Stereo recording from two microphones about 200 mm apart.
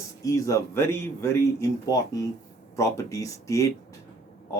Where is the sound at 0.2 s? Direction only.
15° left (ahead or behind).